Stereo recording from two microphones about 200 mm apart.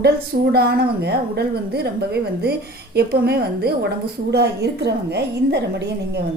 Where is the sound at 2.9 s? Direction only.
50° right (ahead or behind).